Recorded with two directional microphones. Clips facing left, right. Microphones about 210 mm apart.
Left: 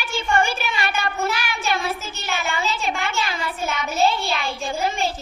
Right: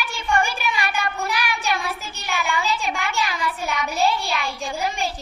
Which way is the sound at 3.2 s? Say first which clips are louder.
Even; 30° left (ahead or behind).